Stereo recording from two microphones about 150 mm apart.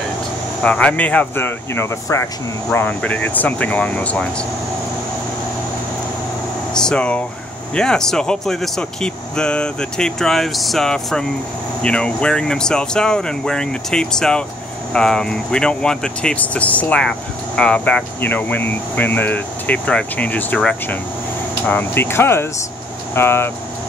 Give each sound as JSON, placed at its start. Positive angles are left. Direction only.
{"t": 0.6, "sound": "speech", "side_deg": 5}
{"t": 6.7, "sound": "speech", "side_deg": 5}